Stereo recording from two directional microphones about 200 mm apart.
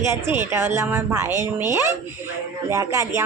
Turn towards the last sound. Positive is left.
turn(degrees=-15)  # may be behind; listen again after turning